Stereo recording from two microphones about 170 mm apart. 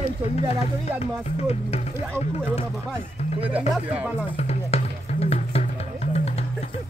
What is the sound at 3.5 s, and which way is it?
Speech, 10° right (ahead or behind).